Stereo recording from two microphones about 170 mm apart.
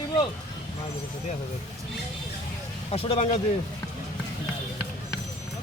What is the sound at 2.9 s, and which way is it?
Speech, 35° left (ahead or behind).